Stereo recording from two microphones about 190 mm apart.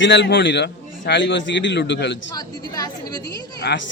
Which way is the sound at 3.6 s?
60° left (ahead or behind).